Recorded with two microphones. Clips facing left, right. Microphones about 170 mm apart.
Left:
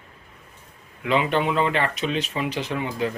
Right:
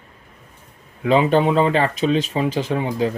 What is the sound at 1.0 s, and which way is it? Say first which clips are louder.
Speech: right 6 dB; 35° right (ahead or behind).